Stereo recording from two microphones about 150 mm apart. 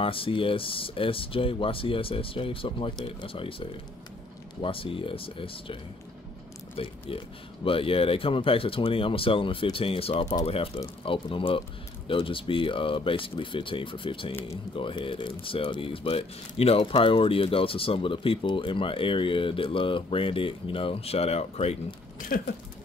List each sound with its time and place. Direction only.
0.0 s speech: 35° left (ahead or behind)
6.8 s speech: 40° left (ahead or behind)
22.3 s a sound: 75° left (ahead or behind)